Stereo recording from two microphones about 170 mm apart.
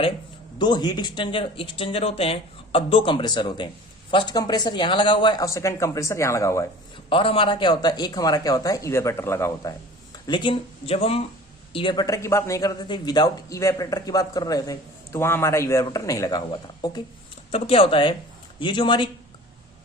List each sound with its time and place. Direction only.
0.6 s a man's voice: 25° left (ahead or behind)
7.1 s a man's voice: 30° left (ahead or behind); by 9.7 s 15° left (ahead or behind)
10.2 s a man's voice: 30° left (ahead or behind)
17.5 s a man's voice: 35° left (ahead or behind)